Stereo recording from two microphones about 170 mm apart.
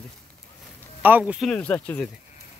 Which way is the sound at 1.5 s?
10° left (ahead or behind).